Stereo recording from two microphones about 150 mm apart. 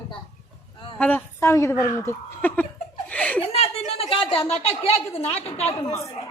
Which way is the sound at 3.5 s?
40° left (ahead or behind).